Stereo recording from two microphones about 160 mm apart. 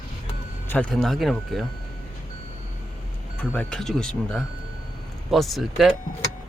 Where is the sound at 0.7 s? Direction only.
5° left (ahead or behind).